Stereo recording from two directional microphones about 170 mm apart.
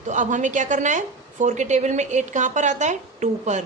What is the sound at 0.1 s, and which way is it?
A woman's voice, 45° right (ahead or behind).